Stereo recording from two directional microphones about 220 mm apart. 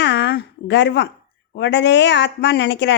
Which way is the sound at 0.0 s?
50° left (ahead or behind).